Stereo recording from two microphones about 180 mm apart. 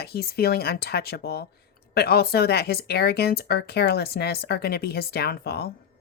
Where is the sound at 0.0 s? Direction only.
60° left (ahead or behind).